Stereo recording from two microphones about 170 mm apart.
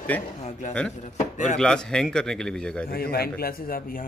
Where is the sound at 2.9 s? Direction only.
65° left (ahead or behind).